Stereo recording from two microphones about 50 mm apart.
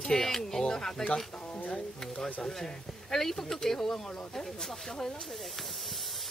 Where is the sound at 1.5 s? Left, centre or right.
Left.